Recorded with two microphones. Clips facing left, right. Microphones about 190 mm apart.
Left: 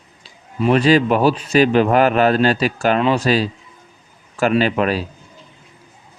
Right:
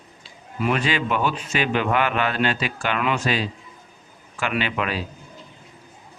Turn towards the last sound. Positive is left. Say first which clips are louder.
# left 8 dB
turn(degrees=40)  # may be behind; listen again after turning